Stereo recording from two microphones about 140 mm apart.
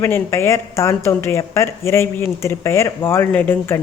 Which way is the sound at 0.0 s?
20° left (ahead or behind).